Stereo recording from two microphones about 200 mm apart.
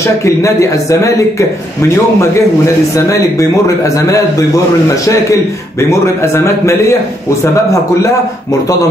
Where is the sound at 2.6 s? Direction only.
15° left (ahead or behind).